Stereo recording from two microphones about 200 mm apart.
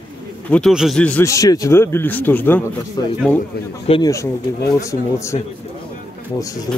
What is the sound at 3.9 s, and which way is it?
Speech, 20° left (ahead or behind).